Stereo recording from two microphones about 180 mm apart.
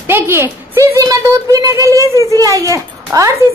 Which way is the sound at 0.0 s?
15° right (ahead or behind).